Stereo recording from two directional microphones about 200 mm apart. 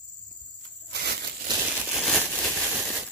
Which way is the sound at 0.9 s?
55° right (ahead or behind).